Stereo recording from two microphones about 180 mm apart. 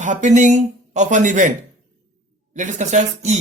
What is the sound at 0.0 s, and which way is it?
A man's voice, 45° right (ahead or behind).